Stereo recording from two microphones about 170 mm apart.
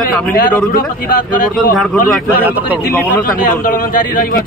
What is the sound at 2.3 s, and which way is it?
Speech, 10° right (ahead or behind).